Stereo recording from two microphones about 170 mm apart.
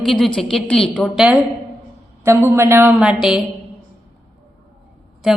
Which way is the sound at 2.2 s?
15° right (ahead or behind).